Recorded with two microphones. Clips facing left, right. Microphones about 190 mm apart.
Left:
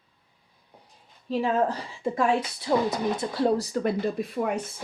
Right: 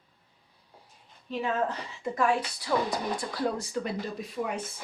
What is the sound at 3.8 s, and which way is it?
Speech, 55° left (ahead or behind).